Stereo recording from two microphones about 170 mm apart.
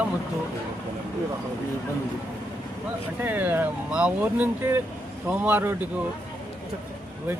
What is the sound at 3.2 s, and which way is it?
Speech, 10° right (ahead or behind).